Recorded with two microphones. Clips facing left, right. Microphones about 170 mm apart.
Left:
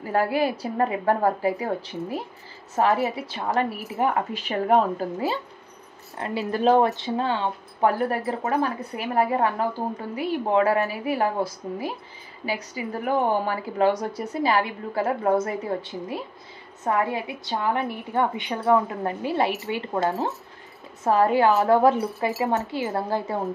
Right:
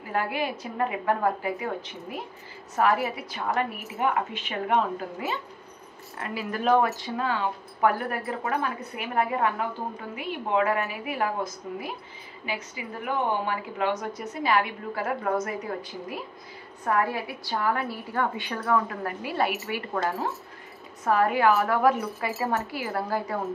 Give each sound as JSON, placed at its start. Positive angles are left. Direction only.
{"t": 0.0, "sound": "a woman's voice", "side_deg": 35}